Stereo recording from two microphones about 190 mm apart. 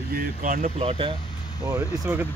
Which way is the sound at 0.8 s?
25° right (ahead or behind).